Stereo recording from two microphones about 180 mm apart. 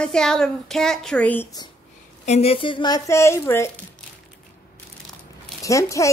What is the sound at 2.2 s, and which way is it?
Speech, 35° left (ahead or behind).